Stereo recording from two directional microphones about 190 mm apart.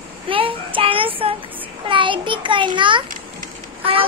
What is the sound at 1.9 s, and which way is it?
A child's voice, 25° right (ahead or behind).